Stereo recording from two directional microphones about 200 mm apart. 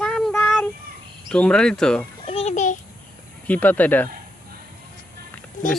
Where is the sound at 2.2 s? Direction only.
30° left (ahead or behind).